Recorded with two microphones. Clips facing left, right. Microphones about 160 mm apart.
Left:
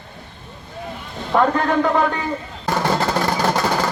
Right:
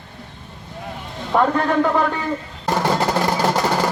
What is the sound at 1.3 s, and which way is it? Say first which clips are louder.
Speech: left 1 dB; 5° right (ahead or behind).